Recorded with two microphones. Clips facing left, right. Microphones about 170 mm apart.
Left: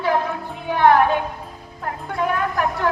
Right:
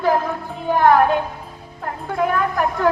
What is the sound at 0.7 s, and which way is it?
Speech, 45° right (ahead or behind).